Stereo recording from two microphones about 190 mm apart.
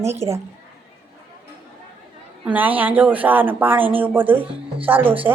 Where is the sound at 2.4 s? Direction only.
10° right (ahead or behind).